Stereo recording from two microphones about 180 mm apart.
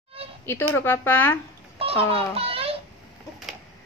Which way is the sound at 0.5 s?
10° left (ahead or behind).